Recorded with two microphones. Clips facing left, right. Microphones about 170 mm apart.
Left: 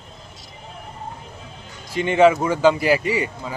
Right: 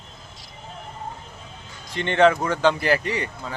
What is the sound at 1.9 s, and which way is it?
Speech, 5° left (ahead or behind).